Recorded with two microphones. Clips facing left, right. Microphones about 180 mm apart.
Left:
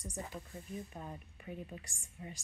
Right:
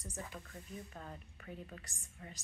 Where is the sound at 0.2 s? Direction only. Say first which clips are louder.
Left 3 dB; 25° left (ahead or behind).